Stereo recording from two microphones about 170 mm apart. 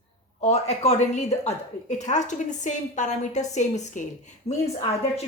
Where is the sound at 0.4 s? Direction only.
40° left (ahead or behind).